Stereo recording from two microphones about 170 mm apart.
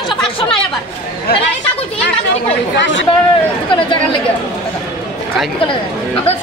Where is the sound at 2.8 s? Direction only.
90° left.